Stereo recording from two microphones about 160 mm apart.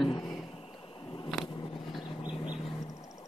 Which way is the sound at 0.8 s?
30° left (ahead or behind).